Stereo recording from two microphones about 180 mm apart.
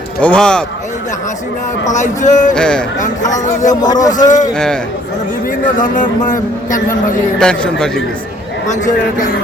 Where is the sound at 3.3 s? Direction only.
45° left (ahead or behind).